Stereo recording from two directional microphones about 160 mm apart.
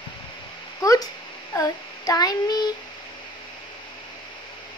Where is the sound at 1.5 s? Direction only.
25° left (ahead or behind).